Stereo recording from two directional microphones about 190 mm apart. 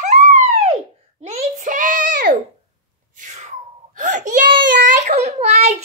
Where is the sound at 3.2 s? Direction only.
35° right (ahead or behind).